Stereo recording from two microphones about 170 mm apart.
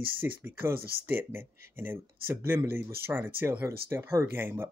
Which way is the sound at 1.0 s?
15° right (ahead or behind).